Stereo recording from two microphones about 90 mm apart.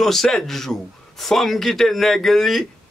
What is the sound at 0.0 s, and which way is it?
A man's voice, 5° left (ahead or behind).